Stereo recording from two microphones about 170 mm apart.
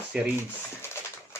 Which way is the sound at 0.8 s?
15° left (ahead or behind).